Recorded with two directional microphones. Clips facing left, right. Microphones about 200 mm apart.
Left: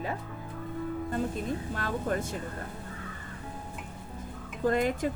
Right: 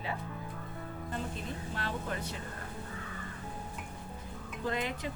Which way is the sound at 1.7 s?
45° left (ahead or behind).